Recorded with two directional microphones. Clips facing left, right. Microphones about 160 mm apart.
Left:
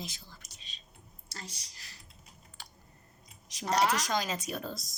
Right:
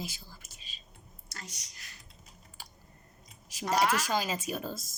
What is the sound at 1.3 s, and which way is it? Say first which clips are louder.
Speech: left 2 dB; 30° left (ahead or behind).